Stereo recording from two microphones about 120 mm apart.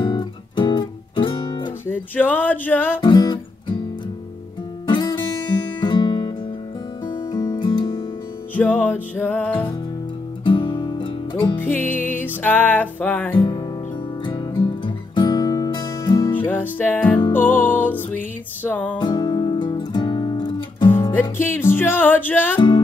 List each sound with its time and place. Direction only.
0.0 s music: 40° left (ahead or behind)
1.9 s music: 15° left (ahead or behind)
3.0 s guitar: 40° left (ahead or behind)
4.8 s music: 40° left (ahead or behind)
7.5 s music: 40° left (ahead or behind)
8.5 s music: 15° left (ahead or behind)
10.4 s music: 40° left (ahead or behind)
11.5 s music: 15° left (ahead or behind)
13.4 s music: 40° left (ahead or behind)
16.3 s music: 15° left (ahead or behind)
18.9 s music: 40° left (ahead or behind)
20.9 s music: 15° left (ahead or behind)